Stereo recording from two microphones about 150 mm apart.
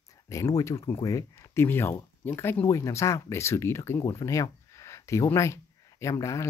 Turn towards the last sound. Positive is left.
turn(degrees=20)  # may be behind; listen again after turning